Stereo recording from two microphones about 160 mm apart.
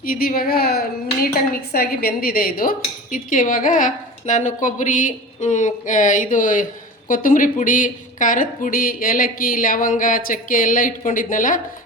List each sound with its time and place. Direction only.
0.0 s a woman's voice: 65° left (ahead or behind)